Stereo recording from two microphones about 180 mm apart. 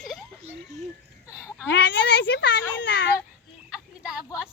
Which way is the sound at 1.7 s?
70° left (ahead or behind).